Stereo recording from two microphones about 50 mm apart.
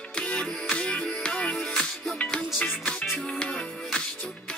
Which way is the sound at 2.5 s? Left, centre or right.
Left.